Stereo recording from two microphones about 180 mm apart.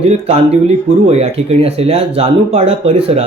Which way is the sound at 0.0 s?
35° right (ahead or behind).